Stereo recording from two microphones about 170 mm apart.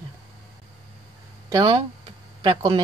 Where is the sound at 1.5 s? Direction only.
25° right (ahead or behind).